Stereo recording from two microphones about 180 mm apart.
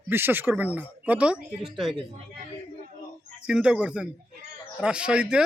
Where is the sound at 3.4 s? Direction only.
5° right (ahead or behind).